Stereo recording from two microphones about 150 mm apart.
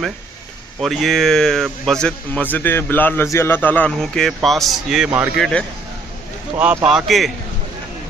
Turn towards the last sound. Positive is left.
turn(degrees=0)  # may be behind; listen again after turning